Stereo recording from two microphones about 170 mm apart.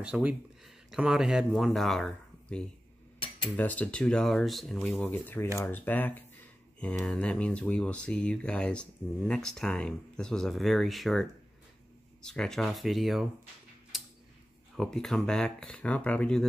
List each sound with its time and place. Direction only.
0.0 s speech: 5° right (ahead or behind)
3.4 s speech: 10° left (ahead or behind)
14.8 s speech: centre (ahead or behind)